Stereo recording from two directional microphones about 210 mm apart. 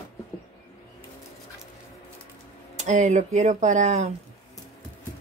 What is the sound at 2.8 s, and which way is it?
Speech, 35° right (ahead or behind).